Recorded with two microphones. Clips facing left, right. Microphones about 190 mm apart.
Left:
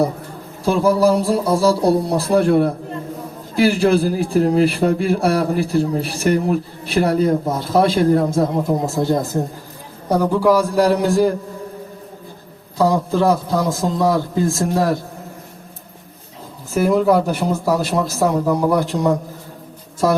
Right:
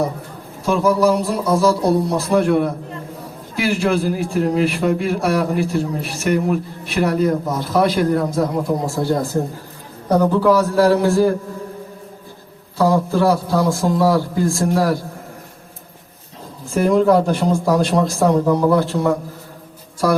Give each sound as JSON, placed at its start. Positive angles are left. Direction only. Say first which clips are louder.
{"t": 0.6, "sound": "a man's voice", "louder": "left 1 dB", "side_deg": 35}
{"t": 12.7, "sound": "a man's voice", "louder": "even", "side_deg": 20}
{"t": 16.7, "sound": "speech", "louder": "right 1 dB", "side_deg": 5}